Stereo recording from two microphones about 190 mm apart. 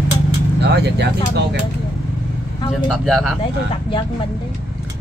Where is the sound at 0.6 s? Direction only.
60° right (ahead or behind).